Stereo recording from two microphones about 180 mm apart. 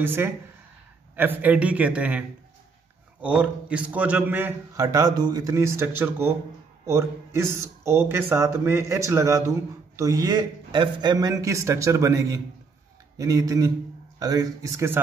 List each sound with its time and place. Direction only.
0.0 s a man's voice: 10° right (ahead or behind)